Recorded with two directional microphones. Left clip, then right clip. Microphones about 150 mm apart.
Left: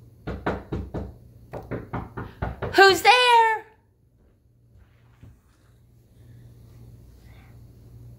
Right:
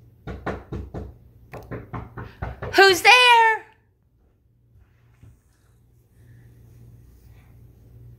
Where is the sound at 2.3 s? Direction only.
10° right (ahead or behind).